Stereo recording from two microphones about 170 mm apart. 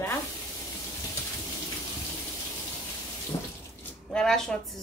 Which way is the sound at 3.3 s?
25° left (ahead or behind).